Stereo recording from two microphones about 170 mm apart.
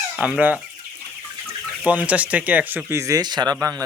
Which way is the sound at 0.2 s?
5° right (ahead or behind).